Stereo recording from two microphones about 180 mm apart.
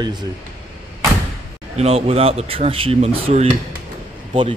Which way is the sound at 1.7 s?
35° right (ahead or behind).